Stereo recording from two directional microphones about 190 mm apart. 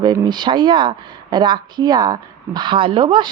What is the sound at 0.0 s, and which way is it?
Speech, 25° right (ahead or behind).